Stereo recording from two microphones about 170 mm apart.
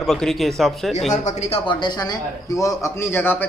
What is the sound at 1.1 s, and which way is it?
Speech, 45° left (ahead or behind).